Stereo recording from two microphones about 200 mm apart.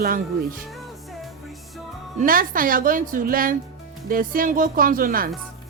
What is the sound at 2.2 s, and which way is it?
A woman's voice, 45° right (ahead or behind).